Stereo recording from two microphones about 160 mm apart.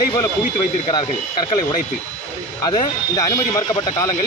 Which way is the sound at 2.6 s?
25° left (ahead or behind).